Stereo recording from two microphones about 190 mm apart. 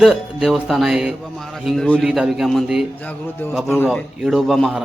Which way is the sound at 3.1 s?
10° left (ahead or behind).